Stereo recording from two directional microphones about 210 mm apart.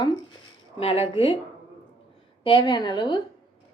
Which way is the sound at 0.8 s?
30° left (ahead or behind).